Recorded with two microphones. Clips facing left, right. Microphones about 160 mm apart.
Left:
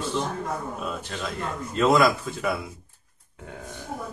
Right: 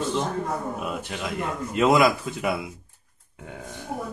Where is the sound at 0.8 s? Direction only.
10° right (ahead or behind).